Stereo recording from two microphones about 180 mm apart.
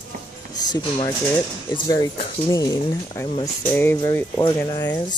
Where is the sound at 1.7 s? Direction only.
20° left (ahead or behind).